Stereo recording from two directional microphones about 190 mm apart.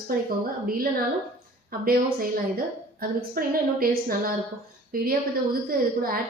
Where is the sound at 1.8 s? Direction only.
50° right (ahead or behind).